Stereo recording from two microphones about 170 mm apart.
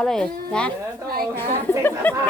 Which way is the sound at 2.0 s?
10° left (ahead or behind).